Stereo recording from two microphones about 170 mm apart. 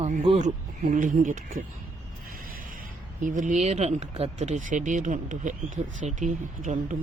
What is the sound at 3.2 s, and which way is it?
Speech, 45° right (ahead or behind).